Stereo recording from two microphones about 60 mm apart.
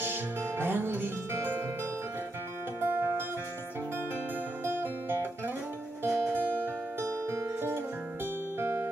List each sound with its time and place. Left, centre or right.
0.0 s music: right
2.8 s music: right
4.6 s music: right